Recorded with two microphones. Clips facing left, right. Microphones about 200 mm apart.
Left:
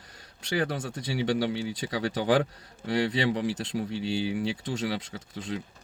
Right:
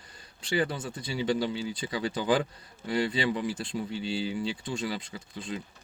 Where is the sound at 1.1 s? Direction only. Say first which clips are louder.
Left 1 dB; 70° left (ahead or behind).